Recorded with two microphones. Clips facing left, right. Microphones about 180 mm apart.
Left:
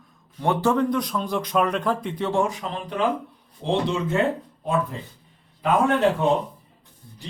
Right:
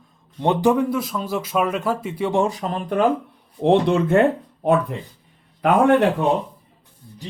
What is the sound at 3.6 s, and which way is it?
Speech, 60° right (ahead or behind).